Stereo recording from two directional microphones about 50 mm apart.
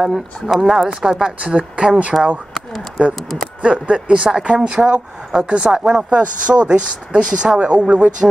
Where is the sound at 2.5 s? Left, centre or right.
Centre.